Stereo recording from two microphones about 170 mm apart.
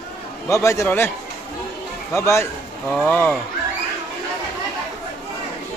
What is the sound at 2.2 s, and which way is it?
A man's voice, 15° left (ahead or behind).